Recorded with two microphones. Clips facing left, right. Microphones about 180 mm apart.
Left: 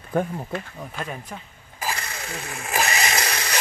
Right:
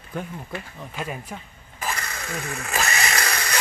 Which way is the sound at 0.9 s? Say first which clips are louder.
Right 2 dB; 5° right (ahead or behind).